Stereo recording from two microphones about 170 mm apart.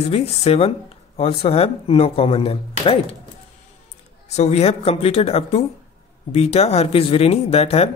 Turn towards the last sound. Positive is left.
turn(degrees=35)  # may be behind; listen again after turning